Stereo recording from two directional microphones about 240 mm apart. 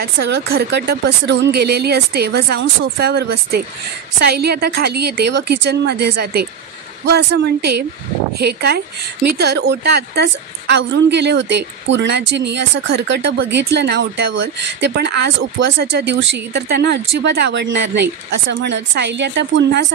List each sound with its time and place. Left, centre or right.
0.0 s speech: right